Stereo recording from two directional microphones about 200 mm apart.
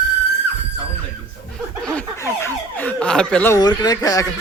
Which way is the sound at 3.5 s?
20° left (ahead or behind).